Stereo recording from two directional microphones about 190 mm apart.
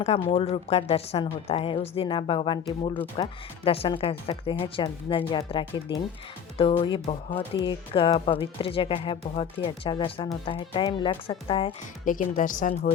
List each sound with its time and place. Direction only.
0.0 s speech: 35° left (ahead or behind)
12.0 s a woman's voice: 45° left (ahead or behind)